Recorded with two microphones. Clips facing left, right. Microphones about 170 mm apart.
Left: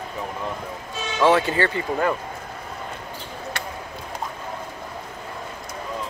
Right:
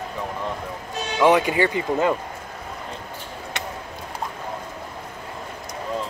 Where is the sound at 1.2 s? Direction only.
15° right (ahead or behind).